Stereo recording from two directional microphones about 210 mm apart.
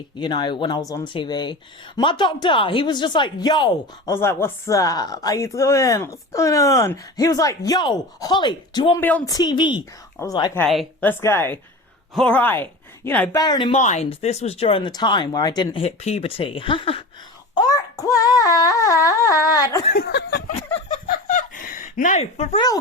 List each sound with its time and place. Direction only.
0.2 s speech: 20° left (ahead or behind)
9.0 s speech: 10° left (ahead or behind)
10.6 s speech: 5° left (ahead or behind)
13.4 s speech: 20° left (ahead or behind)
13.7 s speech: 35° left (ahead or behind); by 19.8 s 15° left (ahead or behind)
19.9 s speech: 50° left (ahead or behind)
20.8 s a sound: 35° left (ahead or behind)